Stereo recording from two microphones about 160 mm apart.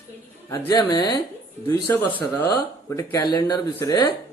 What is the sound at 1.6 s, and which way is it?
A man's voice, 10° left (ahead or behind).